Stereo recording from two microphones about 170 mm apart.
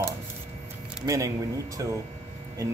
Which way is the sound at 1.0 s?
20° right (ahead or behind).